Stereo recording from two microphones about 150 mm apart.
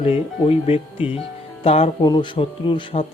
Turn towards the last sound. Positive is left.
turn(degrees=35)  # may be behind; listen again after turning